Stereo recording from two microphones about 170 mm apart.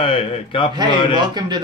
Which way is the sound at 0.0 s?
30° left (ahead or behind).